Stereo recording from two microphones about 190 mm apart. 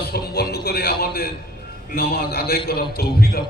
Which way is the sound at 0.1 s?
60° left (ahead or behind).